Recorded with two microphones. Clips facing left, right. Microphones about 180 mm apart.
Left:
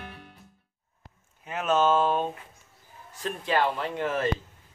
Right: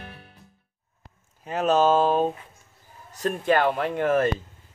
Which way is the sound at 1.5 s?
35° right (ahead or behind).